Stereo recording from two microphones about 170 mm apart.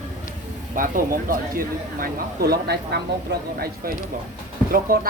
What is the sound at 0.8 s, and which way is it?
Speech, 55° right (ahead or behind).